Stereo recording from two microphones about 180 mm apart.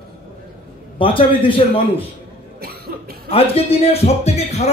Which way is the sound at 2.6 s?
60° right (ahead or behind).